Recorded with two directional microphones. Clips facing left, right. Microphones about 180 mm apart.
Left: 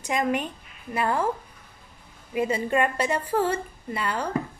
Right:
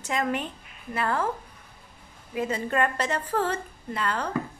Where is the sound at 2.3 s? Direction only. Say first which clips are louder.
Left 3 dB; 10° left (ahead or behind).